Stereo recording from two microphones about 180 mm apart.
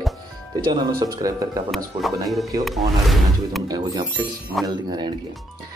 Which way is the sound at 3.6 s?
20° right (ahead or behind).